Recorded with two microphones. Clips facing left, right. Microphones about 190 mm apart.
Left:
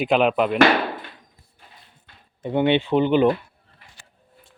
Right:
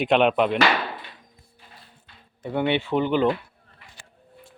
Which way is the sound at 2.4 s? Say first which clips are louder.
Left 4 dB; 20° left (ahead or behind).